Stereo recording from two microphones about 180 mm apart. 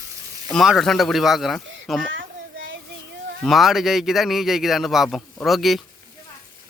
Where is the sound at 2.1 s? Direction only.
90° right.